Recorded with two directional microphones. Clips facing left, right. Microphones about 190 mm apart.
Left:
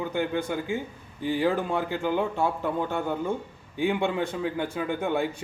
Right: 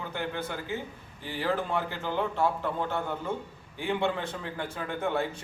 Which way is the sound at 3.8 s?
15° left (ahead or behind).